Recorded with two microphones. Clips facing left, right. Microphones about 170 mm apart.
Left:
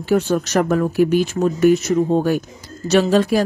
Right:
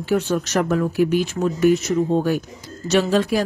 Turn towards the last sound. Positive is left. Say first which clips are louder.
# left 3 dB
turn(degrees=40)  # may be behind; listen again after turning